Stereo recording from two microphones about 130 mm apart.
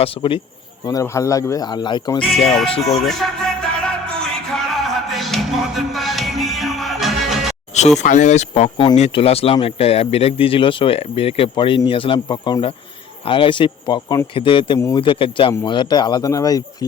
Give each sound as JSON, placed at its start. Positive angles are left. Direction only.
{"t": 0.0, "sound": "speech", "side_deg": 45}
{"t": 0.9, "sound": "speech", "side_deg": 25}
{"t": 3.1, "sound": "music", "side_deg": 5}
{"t": 7.7, "sound": "speech", "side_deg": 60}
{"t": 14.8, "sound": "speech", "side_deg": 25}
{"t": 15.0, "sound": "speech", "side_deg": 40}